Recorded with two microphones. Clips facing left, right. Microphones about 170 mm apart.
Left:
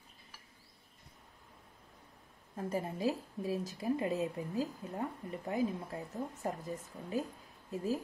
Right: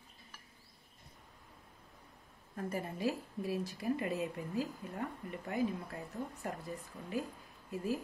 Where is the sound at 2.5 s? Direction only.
20° left (ahead or behind).